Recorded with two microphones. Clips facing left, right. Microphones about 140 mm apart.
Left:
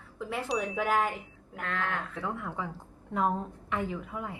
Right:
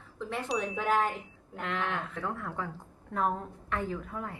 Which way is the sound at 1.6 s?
15° right (ahead or behind).